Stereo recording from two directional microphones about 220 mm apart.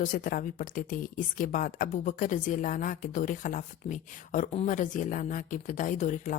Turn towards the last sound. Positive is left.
turn(degrees=35)  # may be behind; listen again after turning